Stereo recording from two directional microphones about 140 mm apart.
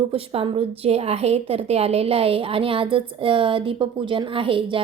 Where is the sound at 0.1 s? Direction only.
45° right (ahead or behind).